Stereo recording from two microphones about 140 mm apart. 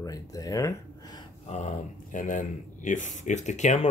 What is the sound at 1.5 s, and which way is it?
Speech, 60° left (ahead or behind).